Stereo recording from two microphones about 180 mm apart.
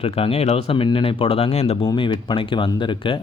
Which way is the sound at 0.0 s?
35° left (ahead or behind).